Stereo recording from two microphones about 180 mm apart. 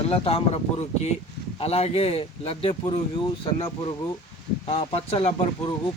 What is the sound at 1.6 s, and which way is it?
Speech, 35° left (ahead or behind).